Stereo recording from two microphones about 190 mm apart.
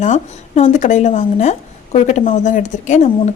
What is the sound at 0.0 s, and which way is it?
A woman's voice, 40° left (ahead or behind).